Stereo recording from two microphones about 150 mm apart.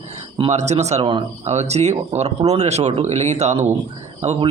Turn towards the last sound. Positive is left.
turn(degrees=-50)  # may be behind; listen again after turning